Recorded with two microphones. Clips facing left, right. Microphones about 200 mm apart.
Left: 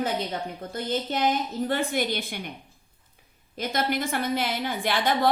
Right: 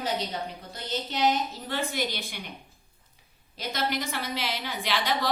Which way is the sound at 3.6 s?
50° left (ahead or behind).